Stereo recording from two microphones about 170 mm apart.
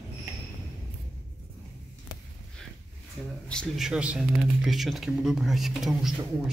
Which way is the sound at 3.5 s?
Centre (ahead or behind).